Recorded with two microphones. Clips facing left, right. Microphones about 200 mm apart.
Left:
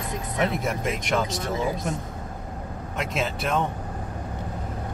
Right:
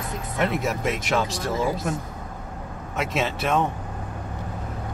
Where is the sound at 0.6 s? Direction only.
5° right (ahead or behind).